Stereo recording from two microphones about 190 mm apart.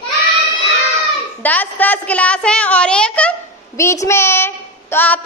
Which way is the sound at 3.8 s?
15° left (ahead or behind).